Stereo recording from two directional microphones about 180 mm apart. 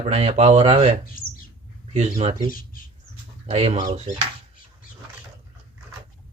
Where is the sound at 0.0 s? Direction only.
35° right (ahead or behind).